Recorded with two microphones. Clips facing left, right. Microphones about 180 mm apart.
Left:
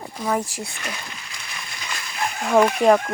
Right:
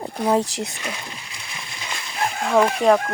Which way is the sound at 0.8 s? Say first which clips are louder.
Right 2 dB; 25° right (ahead or behind).